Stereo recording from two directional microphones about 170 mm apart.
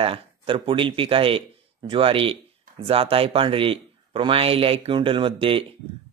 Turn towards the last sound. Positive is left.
turn(degrees=-30)  # may be behind; listen again after turning